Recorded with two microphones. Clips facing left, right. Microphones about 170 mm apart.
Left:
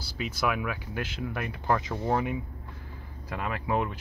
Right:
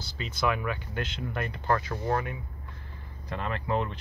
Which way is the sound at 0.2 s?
10° left (ahead or behind).